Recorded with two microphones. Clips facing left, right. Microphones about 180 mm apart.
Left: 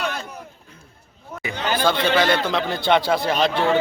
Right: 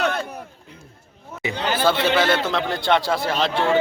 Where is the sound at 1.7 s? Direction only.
5° right (ahead or behind).